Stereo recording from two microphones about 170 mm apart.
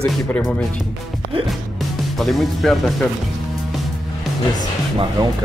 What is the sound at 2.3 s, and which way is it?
Speech, centre (ahead or behind).